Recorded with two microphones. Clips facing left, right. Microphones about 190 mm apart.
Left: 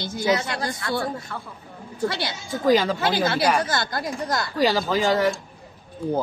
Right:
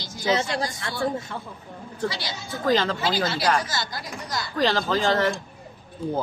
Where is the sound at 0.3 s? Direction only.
25° right (ahead or behind).